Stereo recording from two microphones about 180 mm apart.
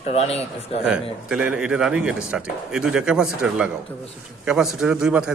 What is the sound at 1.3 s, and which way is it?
A man's voice, 5° right (ahead or behind).